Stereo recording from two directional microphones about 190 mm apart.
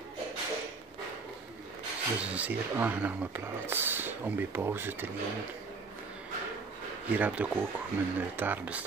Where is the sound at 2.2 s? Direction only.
5° right (ahead or behind).